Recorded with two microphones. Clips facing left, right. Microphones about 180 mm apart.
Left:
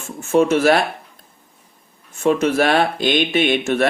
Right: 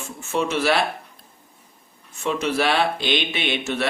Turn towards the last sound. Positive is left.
turn(degrees=50)  # may be behind; listen again after turning